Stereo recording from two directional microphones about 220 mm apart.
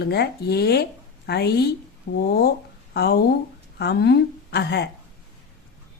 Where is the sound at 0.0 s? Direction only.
50° left (ahead or behind).